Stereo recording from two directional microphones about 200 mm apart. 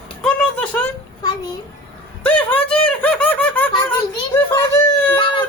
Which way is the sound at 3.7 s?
20° left (ahead or behind).